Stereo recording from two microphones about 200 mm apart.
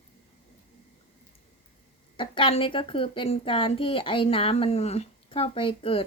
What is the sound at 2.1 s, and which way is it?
A woman's voice, 25° left (ahead or behind).